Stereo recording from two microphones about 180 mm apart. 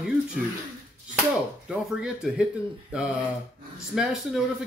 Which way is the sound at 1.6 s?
5° right (ahead or behind).